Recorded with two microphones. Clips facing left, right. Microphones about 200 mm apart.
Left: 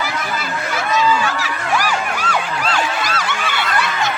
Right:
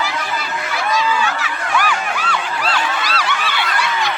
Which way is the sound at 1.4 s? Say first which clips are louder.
Even; 40° left (ahead or behind).